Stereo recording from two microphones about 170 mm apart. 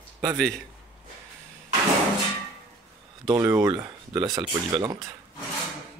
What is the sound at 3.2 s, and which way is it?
Speech, 15° right (ahead or behind).